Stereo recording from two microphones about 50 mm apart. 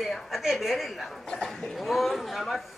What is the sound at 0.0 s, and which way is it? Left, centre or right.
A woman's voice, centre.